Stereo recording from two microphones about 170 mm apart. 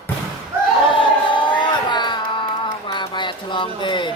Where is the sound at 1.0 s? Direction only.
30° left (ahead or behind).